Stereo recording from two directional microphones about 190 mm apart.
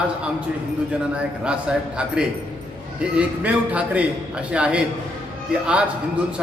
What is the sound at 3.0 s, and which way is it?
A man's voice, 5° right (ahead or behind).